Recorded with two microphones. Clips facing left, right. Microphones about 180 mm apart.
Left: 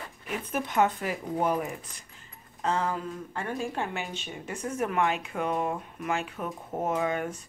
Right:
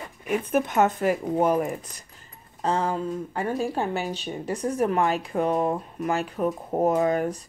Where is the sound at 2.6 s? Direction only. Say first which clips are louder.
Right 4 dB; 30° right (ahead or behind).